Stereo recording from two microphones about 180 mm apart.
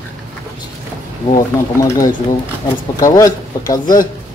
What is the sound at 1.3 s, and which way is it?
Speech, 20° left (ahead or behind).